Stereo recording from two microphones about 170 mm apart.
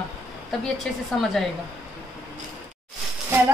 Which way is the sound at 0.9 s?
5° left (ahead or behind).